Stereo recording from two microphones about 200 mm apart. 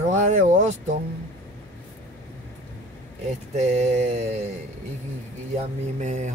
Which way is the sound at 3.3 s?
35° right (ahead or behind).